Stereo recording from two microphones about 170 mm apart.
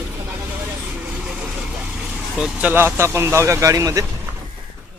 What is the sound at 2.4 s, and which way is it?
Speech, 10° right (ahead or behind).